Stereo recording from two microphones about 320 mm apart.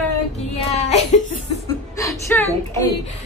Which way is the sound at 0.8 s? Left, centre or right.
Left.